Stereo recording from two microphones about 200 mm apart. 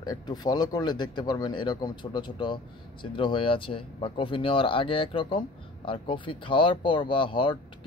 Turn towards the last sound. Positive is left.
turn(degrees=25)  # may be behind; listen again after turning